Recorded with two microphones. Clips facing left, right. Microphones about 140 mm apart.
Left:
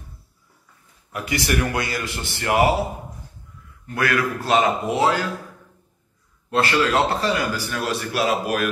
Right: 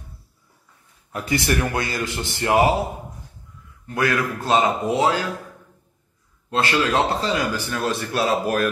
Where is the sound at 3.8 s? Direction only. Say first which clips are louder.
Even; 20° right (ahead or behind).